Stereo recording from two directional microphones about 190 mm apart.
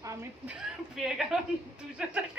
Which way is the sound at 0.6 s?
Centre (ahead or behind).